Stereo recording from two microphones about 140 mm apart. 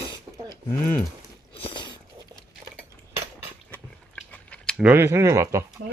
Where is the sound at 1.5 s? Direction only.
40° left (ahead or behind).